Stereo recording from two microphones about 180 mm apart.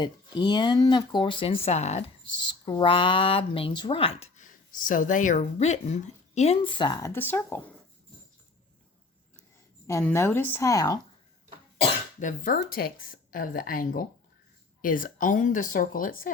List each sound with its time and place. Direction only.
0.0 s speech: 25° left (ahead or behind)
2.4 s speech: 25° left (ahead or behind)
7.1 s a woman's voice: 10° left (ahead or behind)
9.8 s a woman's voice: 15° left (ahead or behind)
11.8 s speech: 50° left (ahead or behind)